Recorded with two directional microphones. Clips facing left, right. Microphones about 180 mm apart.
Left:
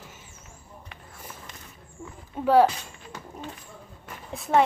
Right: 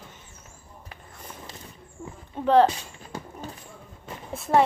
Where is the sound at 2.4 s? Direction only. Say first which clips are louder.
Even; 5° left (ahead or behind).